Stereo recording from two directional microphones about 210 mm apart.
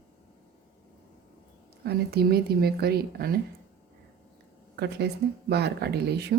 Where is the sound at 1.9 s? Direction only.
50° right (ahead or behind).